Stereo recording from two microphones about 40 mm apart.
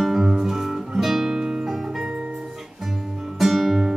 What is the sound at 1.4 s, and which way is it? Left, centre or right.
Music, centre.